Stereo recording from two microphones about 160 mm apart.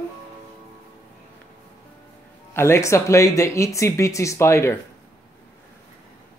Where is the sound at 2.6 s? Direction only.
15° left (ahead or behind).